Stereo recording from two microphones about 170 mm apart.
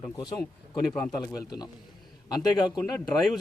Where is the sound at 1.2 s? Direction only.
20° left (ahead or behind).